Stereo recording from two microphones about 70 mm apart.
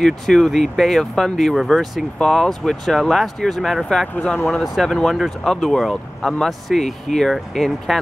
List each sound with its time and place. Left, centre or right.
0.0 s speech: centre
4.1 s speech: left
4.5 s speech: centre